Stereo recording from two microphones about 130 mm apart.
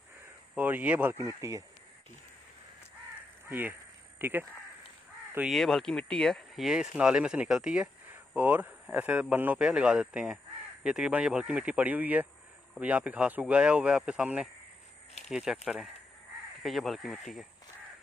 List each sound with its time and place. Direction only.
0.6 s speech: 15° right (ahead or behind)
3.4 s speech: 15° right (ahead or behind)
5.5 s speech: centre (ahead or behind)